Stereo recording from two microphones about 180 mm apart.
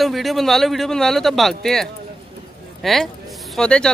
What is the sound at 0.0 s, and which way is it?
Speech, centre (ahead or behind).